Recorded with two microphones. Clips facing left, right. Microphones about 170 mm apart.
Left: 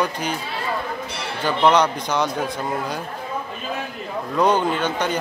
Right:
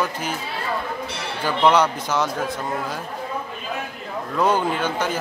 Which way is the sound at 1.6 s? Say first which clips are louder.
Even; 10° right (ahead or behind).